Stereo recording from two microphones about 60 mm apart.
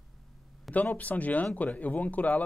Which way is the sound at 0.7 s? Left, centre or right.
Left.